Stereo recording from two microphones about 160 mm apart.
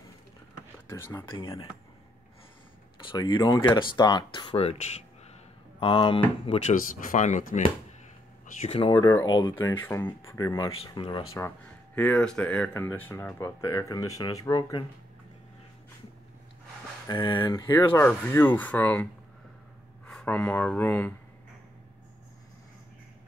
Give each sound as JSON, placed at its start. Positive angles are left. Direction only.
{"t": 0.8, "sound": "speech", "side_deg": 15}
{"t": 1.3, "sound": "speech", "side_deg": 30}
{"t": 3.0, "sound": "speech", "side_deg": 30}
{"t": 5.8, "sound": "speech", "side_deg": 35}
{"t": 6.7, "sound": "speech", "side_deg": 55}
{"t": 8.5, "sound": "speech", "side_deg": 40}
{"t": 9.7, "sound": "speech", "side_deg": 15}
{"t": 11.3, "sound": "speech", "side_deg": 15}
{"t": 17.1, "sound": "speech", "side_deg": 30}
{"t": 17.6, "sound": "speech", "side_deg": 15}
{"t": 20.1, "sound": "speech", "side_deg": 5}